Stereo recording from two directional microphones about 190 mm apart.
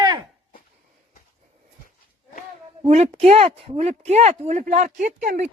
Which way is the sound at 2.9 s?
35° right (ahead or behind).